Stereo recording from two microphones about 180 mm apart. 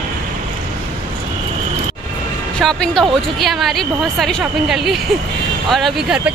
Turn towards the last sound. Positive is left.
turn(degrees=0)  # may be behind; listen again after turning